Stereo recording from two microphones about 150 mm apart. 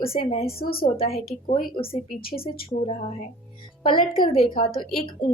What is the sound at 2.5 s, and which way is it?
Speech, 55° left (ahead or behind).